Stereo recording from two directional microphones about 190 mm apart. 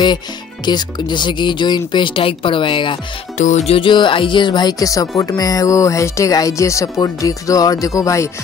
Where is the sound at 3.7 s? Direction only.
25° left (ahead or behind).